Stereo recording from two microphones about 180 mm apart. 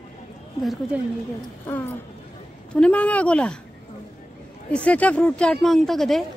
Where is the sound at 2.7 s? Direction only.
5° left (ahead or behind).